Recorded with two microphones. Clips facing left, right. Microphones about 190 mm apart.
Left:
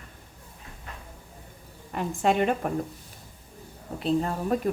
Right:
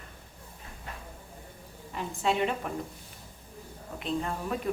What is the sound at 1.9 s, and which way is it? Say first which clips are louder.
Speech: left 5 dB; 50° left (ahead or behind).